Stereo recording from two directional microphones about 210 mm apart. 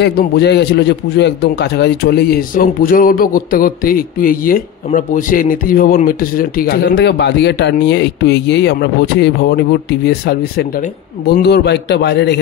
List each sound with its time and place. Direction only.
0.0 s speech: 50° left (ahead or behind)